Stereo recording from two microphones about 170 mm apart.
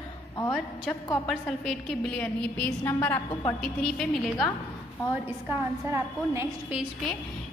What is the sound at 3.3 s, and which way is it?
Speech, 25° left (ahead or behind).